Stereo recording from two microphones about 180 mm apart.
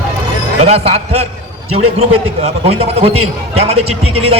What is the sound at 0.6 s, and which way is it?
A man's voice, 35° right (ahead or behind).